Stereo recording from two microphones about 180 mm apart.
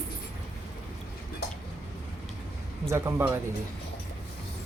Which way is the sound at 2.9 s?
15° right (ahead or behind).